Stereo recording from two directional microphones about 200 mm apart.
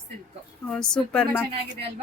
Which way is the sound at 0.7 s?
5° left (ahead or behind).